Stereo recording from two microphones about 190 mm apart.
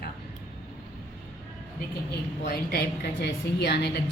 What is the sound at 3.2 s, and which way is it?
Speech, 60° left (ahead or behind).